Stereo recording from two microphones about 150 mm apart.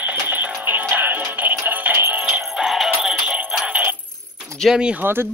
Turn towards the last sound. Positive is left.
turn(degrees=-10)  # may be behind; listen again after turning